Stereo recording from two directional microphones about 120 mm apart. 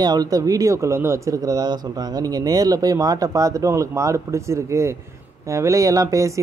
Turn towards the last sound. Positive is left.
turn(degrees=-25)  # may be behind; listen again after turning